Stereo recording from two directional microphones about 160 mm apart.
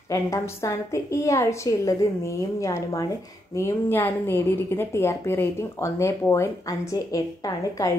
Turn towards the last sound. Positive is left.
turn(degrees=20)  # may be behind; listen again after turning